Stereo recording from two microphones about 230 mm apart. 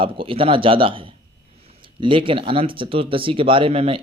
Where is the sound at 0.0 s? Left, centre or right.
Right.